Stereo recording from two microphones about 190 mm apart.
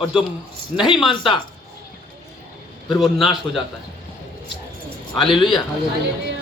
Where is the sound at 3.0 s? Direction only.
Centre (ahead or behind).